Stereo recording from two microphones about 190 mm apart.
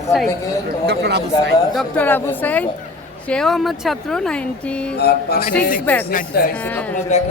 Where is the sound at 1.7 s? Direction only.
5° left (ahead or behind).